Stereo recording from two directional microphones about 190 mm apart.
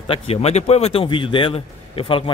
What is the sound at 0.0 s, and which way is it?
A man's voice, 30° left (ahead or behind).